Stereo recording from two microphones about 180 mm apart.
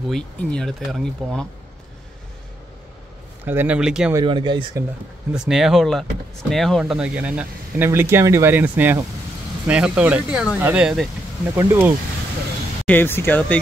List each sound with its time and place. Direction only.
0.1 s speech: 5° left (ahead or behind)
3.4 s speech: 10° right (ahead or behind)
4.1 s speech: 25° right (ahead or behind)
5.3 s speech: 5° right (ahead or behind)
12.8 s speech: 10° left (ahead or behind)